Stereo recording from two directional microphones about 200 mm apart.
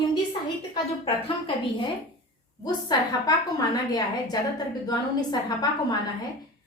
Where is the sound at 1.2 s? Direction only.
25° left (ahead or behind).